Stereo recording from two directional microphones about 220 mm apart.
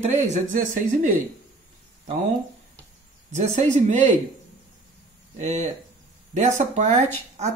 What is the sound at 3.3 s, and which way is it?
Speech, 35° right (ahead or behind).